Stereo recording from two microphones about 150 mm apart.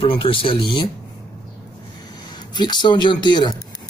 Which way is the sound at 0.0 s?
35° left (ahead or behind).